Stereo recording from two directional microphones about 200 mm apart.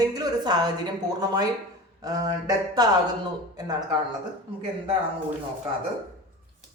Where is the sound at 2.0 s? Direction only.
20° right (ahead or behind).